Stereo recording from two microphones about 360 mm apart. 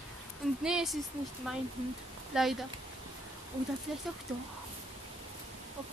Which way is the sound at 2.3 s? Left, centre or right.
Centre.